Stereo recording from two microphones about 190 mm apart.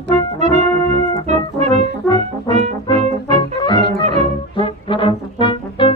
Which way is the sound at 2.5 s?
35° right (ahead or behind).